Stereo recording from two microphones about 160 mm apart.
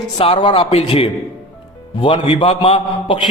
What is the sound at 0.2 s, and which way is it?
A man's voice, 35° left (ahead or behind).